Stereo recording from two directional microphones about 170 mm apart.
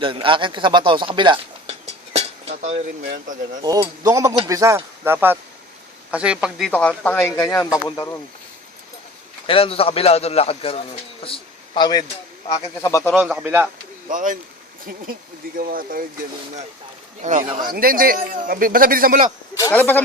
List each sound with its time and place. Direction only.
0.0 s speech: 30° right (ahead or behind)
2.1 s dishes: 40° right (ahead or behind)
3.0 s speech: 65° right (ahead or behind)
3.6 s speech: 20° right (ahead or behind); by 6.7 s 5° right (ahead or behind)
6.7 s speech: 5° left (ahead or behind)
9.5 s a man's voice: 35° left (ahead or behind)
13.0 s a man's voice: centre (ahead or behind)
14.1 s a man's voice: 50° right (ahead or behind)
17.2 s a man's voice: 45° right (ahead or behind)
19.5 s speech: 15° left (ahead or behind)